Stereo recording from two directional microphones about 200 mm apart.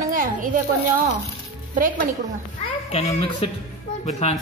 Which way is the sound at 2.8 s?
30° left (ahead or behind).